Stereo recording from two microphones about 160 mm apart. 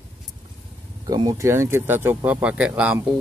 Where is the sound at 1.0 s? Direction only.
25° right (ahead or behind).